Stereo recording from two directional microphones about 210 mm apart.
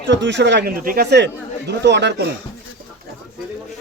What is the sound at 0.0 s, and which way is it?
Speech, 55° right (ahead or behind).